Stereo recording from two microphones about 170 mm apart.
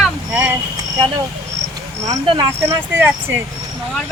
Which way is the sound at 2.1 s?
25° right (ahead or behind).